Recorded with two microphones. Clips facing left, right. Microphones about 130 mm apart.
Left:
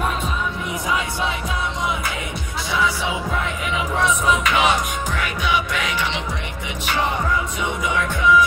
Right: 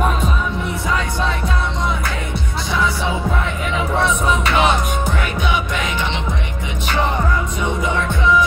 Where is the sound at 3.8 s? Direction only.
30° right (ahead or behind).